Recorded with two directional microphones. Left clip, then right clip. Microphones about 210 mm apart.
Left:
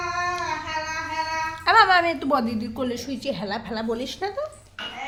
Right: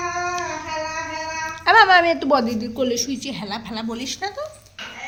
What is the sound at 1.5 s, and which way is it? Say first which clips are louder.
A woman's voice: right 4 dB; 25° left (ahead or behind).